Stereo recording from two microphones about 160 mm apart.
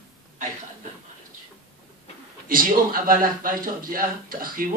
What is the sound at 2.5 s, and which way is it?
Speech, 60° right (ahead or behind).